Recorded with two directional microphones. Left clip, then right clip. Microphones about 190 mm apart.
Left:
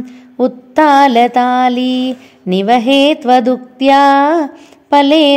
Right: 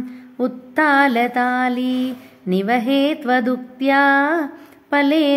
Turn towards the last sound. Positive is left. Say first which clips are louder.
# left 8 dB
turn(degrees=25)  # may be behind; listen again after turning